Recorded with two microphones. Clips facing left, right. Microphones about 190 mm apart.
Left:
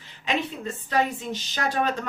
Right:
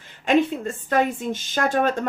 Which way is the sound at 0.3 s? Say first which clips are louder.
Right 8 dB; 50° right (ahead or behind).